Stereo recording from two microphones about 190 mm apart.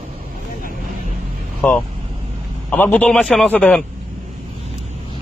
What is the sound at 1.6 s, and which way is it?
A man's voice, 10° left (ahead or behind).